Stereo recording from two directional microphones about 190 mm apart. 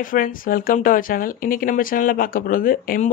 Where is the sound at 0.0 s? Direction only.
45° left (ahead or behind).